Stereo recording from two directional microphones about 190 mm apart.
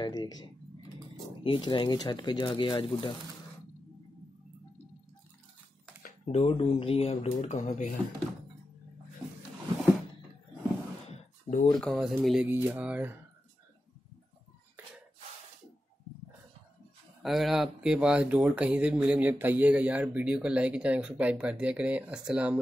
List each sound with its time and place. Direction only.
0.0 s speech: 20° left (ahead or behind)
6.2 s speech: 35° left (ahead or behind)
11.1 s a sound: 35° left (ahead or behind)
11.8 s speech: centre (ahead or behind)
17.2 s speech: centre (ahead or behind)